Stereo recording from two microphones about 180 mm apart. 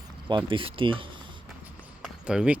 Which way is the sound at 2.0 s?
5° right (ahead or behind).